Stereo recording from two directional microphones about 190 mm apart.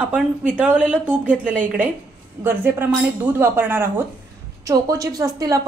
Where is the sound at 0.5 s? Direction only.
5° right (ahead or behind).